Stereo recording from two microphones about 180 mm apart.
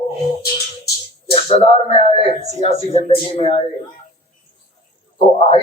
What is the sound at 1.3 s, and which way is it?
A man's voice, 30° left (ahead or behind).